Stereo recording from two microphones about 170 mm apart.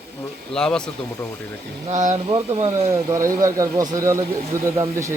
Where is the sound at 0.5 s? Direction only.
5° left (ahead or behind).